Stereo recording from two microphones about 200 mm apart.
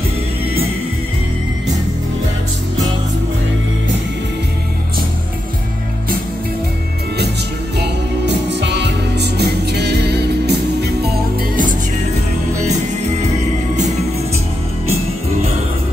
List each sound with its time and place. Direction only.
7.8 s music: 60° right (ahead or behind)